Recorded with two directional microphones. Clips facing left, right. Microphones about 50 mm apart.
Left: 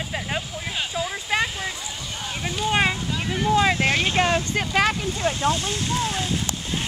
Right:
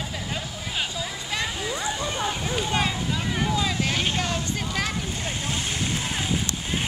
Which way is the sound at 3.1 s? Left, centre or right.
Centre.